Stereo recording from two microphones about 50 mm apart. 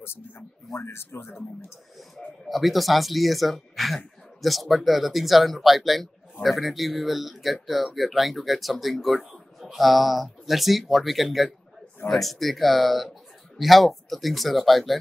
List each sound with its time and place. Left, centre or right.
0.0 s speech: left
2.0 s speech: centre